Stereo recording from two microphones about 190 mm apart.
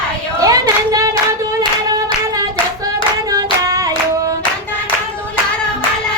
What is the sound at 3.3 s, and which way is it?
Hands, 20° right (ahead or behind).